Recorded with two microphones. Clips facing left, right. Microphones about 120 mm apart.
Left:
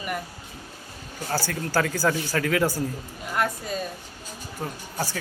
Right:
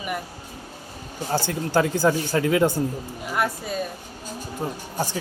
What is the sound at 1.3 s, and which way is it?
Speech, 20° right (ahead or behind).